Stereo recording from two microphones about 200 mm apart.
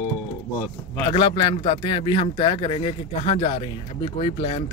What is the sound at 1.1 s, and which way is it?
Speech, 25° left (ahead or behind).